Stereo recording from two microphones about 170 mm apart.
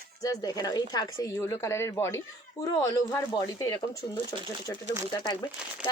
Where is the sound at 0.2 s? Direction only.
20° left (ahead or behind).